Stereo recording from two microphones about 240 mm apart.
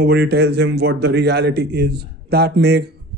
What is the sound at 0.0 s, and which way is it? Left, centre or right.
A man's voice, right.